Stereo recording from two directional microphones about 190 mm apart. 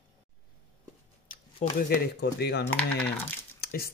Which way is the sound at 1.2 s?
45° left (ahead or behind).